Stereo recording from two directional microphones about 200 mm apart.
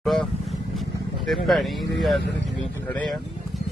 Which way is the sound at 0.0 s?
Centre (ahead or behind).